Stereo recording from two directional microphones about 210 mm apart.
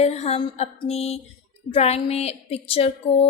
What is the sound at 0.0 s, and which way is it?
A woman's voice, 30° left (ahead or behind).